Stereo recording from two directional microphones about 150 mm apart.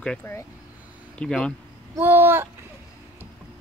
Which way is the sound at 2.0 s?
15° right (ahead or behind).